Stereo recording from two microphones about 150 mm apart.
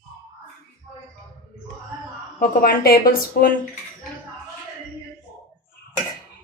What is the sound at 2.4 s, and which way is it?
Speech, 75° left (ahead or behind).